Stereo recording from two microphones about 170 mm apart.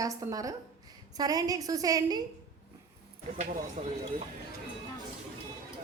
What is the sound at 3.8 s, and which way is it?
Speech, 40° right (ahead or behind).